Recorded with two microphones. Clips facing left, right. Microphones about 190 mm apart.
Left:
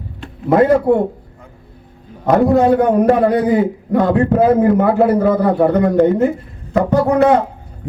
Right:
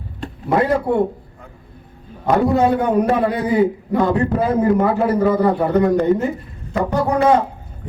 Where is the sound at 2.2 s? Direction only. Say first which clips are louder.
Left 4 dB; 50° left (ahead or behind).